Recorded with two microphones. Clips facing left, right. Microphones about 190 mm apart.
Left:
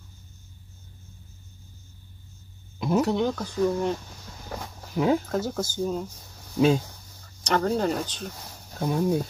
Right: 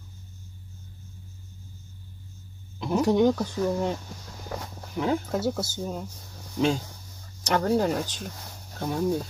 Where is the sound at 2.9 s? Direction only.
15° right (ahead or behind).